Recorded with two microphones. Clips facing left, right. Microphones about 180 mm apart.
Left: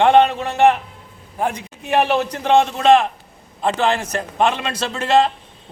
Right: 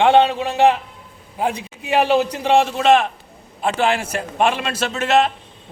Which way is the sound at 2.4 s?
5° right (ahead or behind).